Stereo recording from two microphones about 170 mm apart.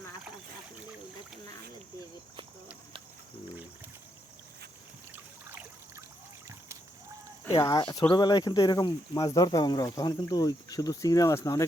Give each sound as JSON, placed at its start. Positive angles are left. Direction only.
{"t": 5.1, "sound": "trickle", "side_deg": -10}
{"t": 7.6, "sound": "speech", "side_deg": 25}